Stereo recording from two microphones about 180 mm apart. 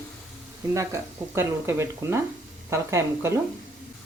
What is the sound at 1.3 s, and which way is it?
Frying, 15° right (ahead or behind).